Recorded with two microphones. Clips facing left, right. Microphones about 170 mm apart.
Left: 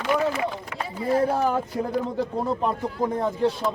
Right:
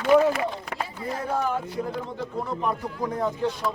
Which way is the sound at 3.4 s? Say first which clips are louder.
Left 3 dB; 30° left (ahead or behind).